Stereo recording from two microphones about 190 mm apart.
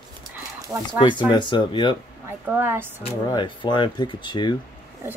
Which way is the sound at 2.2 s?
10° right (ahead or behind).